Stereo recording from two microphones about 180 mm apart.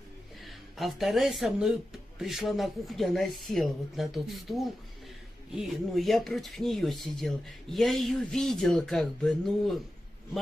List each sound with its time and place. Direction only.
0.7 s speech: centre (ahead or behind)